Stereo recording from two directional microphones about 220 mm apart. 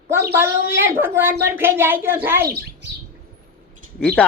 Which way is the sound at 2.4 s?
45° right (ahead or behind).